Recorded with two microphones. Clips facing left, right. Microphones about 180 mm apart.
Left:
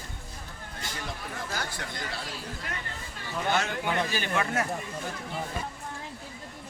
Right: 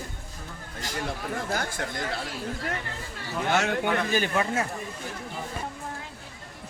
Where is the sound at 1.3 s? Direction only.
50° right (ahead or behind).